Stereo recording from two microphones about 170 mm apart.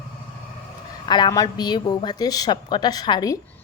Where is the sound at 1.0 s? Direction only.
25° left (ahead or behind).